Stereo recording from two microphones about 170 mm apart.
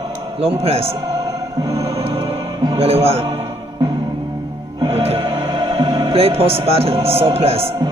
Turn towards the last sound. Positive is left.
turn(degrees=-35)  # may be behind; listen again after turning